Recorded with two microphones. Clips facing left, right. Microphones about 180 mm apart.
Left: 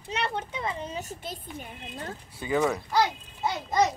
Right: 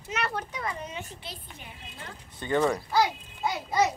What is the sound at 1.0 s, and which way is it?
Speech, 45° left (ahead or behind).